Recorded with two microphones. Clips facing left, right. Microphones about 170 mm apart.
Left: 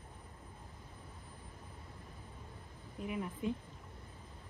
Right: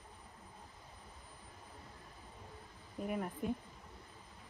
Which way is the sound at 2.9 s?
45° right (ahead or behind).